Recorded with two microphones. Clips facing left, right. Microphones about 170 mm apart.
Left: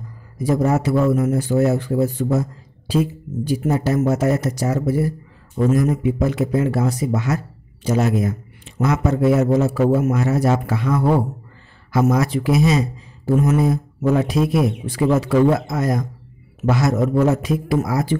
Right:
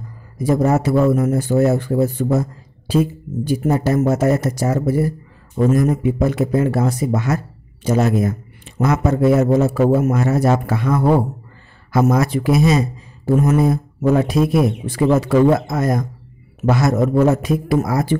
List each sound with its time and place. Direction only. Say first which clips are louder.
0.4 s speech: right 2 dB; 50° right (ahead or behind)